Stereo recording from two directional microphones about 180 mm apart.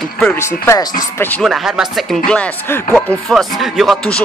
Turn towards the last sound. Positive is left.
turn(degrees=0)  # may be behind; listen again after turning